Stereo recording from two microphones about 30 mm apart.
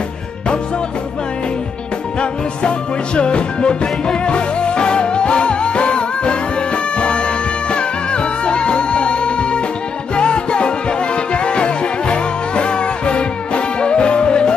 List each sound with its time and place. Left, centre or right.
3.2 s music: left